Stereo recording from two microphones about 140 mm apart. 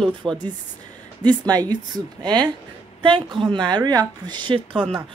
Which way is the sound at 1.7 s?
30° right (ahead or behind).